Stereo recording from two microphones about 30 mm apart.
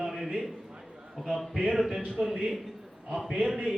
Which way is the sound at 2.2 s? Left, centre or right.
Right.